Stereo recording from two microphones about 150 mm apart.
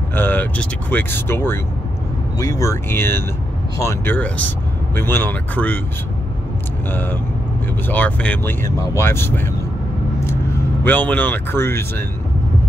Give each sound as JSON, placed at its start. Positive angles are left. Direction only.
{"t": 0.1, "sound": "speech", "side_deg": 15}
{"t": 6.9, "sound": "speech", "side_deg": 15}